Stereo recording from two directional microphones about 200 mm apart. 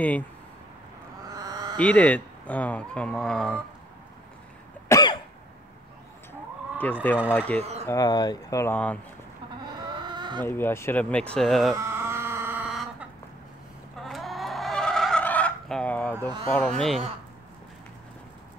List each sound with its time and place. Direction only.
1.3 s a sound: 20° right (ahead or behind)
1.8 s speech: 5° left (ahead or behind)
4.8 s cough: 20° left (ahead or behind)
6.8 s speech: 10° left (ahead or behind)
9.9 s chicken: 20° right (ahead or behind)
10.4 s speech: 10° left (ahead or behind)
11.7 s chicken: 10° right (ahead or behind)
14.0 s vehicle: centre (ahead or behind)
16.2 s speech: 20° right (ahead or behind)
16.5 s speech: 5° left (ahead or behind)